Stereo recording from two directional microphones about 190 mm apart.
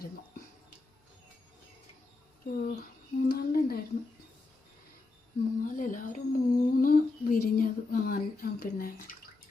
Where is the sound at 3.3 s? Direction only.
50° left (ahead or behind).